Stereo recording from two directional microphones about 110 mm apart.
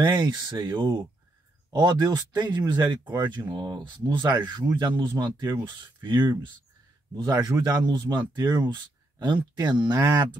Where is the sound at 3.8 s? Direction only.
45° right (ahead or behind).